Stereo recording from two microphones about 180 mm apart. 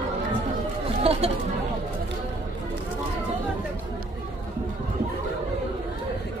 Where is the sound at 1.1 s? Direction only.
35° right (ahead or behind).